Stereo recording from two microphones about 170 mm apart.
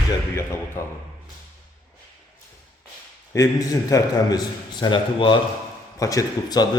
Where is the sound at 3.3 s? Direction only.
20° left (ahead or behind).